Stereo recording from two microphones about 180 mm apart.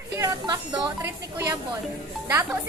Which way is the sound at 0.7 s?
15° right (ahead or behind).